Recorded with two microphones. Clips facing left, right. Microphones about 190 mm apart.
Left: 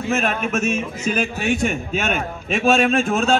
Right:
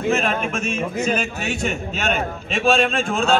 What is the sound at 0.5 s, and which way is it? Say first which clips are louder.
A man's voice: left 2 dB; 50° left (ahead or behind).